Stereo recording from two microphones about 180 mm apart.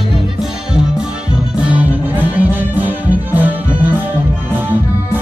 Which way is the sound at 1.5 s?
5° right (ahead or behind).